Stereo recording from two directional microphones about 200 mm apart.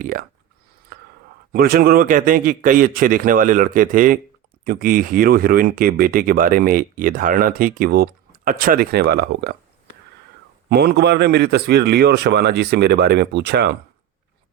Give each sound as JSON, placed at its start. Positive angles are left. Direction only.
{"t": 0.0, "sound": "speech", "side_deg": -45}
{"t": 0.9, "sound": "whispering", "side_deg": -50}
{"t": 1.5, "sound": "speech", "side_deg": -50}
{"t": 10.7, "sound": "speech", "side_deg": -55}